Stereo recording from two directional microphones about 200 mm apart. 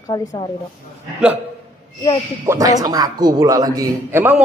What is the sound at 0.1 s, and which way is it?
Speech, 15° left (ahead or behind).